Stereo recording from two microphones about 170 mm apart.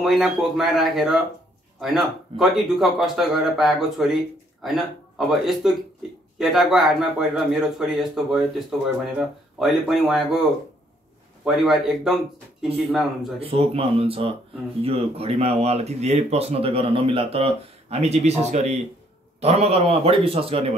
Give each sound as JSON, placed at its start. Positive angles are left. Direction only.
{"t": 0.0, "sound": "a man's voice", "side_deg": 0}
{"t": 11.4, "sound": "a man's voice", "side_deg": 0}
{"t": 13.4, "sound": "speech", "side_deg": -35}